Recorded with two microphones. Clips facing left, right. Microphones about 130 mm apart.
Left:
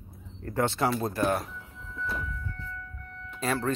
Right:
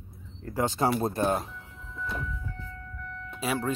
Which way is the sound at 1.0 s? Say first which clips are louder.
Right 1 dB; 25° right (ahead or behind).